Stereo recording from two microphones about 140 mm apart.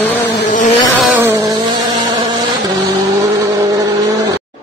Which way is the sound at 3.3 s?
25° right (ahead or behind).